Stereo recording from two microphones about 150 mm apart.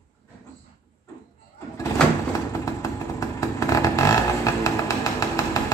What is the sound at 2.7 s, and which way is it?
Vehicle, 20° left (ahead or behind).